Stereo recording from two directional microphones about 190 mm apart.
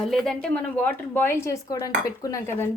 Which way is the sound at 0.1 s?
5° left (ahead or behind).